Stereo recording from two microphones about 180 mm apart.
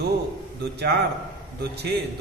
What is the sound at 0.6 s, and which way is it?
Speech, 65° right (ahead or behind).